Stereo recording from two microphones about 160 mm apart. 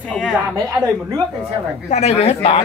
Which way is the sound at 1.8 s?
45° left (ahead or behind).